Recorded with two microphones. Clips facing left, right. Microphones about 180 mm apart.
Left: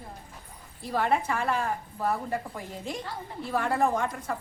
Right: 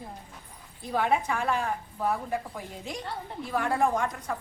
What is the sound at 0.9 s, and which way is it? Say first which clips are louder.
A woman's voice: even; centre (ahead or behind).